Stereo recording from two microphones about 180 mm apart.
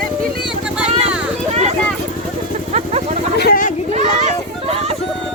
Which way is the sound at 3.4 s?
55° left (ahead or behind).